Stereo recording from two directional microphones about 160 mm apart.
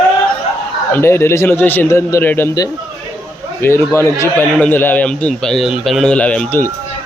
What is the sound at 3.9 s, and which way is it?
Speech, 15° left (ahead or behind).